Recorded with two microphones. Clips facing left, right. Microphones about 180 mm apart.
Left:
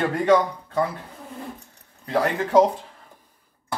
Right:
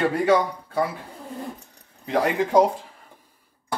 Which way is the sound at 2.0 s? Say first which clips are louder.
Right 1 dB; 15° right (ahead or behind).